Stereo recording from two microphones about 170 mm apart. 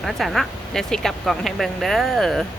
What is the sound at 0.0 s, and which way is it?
Speech, centre (ahead or behind).